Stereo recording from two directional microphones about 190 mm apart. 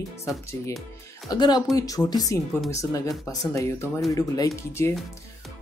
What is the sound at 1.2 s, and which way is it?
Speech, 20° left (ahead or behind).